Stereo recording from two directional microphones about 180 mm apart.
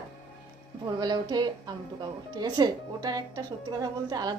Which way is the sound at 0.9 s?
25° right (ahead or behind).